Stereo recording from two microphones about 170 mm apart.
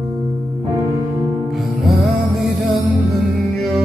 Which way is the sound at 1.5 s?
Centre (ahead or behind).